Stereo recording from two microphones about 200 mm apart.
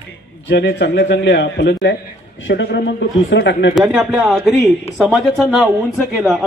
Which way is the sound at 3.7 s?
Centre (ahead or behind).